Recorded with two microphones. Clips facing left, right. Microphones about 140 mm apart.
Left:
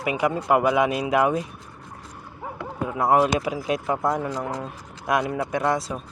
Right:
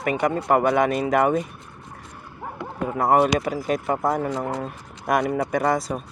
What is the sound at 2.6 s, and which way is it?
Speech, centre (ahead or behind).